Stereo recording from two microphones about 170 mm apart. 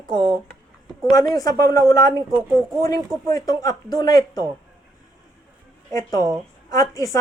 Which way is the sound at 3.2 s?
20° left (ahead or behind).